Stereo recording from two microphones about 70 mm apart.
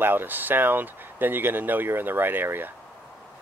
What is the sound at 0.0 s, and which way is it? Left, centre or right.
Speech, right.